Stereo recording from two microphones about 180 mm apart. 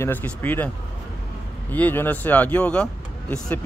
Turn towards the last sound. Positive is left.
turn(degrees=5)  # may be behind; listen again after turning